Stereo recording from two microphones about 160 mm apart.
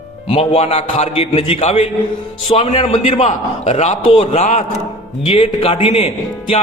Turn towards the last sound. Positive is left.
turn(degrees=35)  # may be behind; listen again after turning